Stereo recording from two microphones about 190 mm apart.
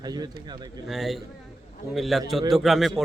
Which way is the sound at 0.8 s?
Centre (ahead or behind).